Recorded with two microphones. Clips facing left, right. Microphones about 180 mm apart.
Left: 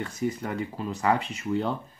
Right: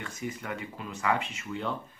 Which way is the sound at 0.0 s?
35° left (ahead or behind).